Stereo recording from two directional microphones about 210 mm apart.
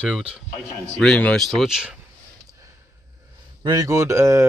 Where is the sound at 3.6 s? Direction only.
20° right (ahead or behind).